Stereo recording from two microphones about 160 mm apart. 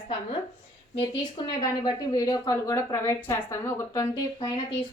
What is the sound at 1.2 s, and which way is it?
A woman's voice, 25° left (ahead or behind).